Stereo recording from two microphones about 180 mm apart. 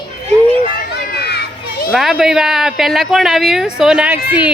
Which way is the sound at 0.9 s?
60° left (ahead or behind).